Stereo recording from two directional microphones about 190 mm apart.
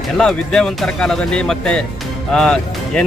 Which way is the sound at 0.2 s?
5° left (ahead or behind).